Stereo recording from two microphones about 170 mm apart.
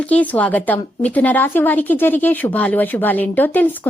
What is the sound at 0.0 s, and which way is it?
A woman's voice, 10° left (ahead or behind).